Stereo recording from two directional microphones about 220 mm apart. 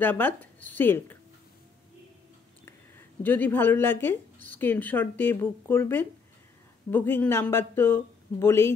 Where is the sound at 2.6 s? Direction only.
10° left (ahead or behind).